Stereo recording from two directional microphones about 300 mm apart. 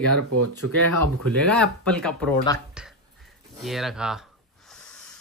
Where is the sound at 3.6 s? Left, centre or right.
Centre.